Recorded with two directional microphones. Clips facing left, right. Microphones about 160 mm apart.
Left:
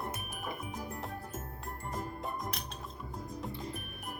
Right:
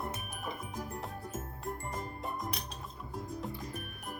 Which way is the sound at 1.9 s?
Centre (ahead or behind).